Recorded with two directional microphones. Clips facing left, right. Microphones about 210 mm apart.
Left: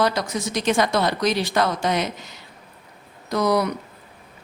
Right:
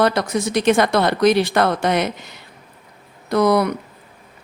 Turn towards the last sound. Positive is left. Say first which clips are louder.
# right 4 dB
turn(degrees=-60)  # may be behind; listen again after turning